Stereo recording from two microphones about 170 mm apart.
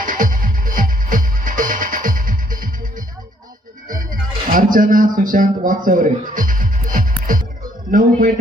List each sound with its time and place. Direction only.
0.0 s music: 55° right (ahead or behind)
3.8 s music: 55° right (ahead or behind)
7.9 s a man's voice: 55° right (ahead or behind)